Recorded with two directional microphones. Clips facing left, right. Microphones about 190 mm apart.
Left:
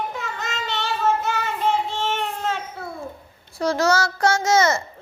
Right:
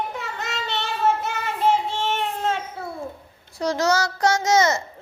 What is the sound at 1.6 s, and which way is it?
Child singing, 25° right (ahead or behind).